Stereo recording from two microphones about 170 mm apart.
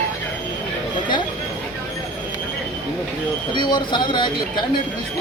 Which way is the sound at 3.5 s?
25° left (ahead or behind).